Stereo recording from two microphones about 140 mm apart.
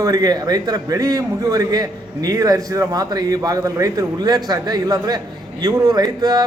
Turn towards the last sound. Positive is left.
turn(degrees=-30)  # may be behind; listen again after turning